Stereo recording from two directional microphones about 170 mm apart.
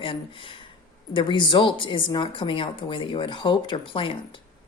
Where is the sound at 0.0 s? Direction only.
30° left (ahead or behind).